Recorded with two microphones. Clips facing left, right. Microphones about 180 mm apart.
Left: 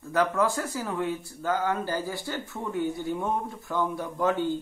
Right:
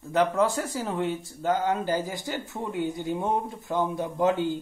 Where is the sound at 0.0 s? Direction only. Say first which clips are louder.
Right 2 dB; 20° right (ahead or behind).